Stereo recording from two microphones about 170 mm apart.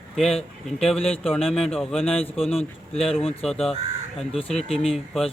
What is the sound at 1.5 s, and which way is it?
Speech, 5° left (ahead or behind).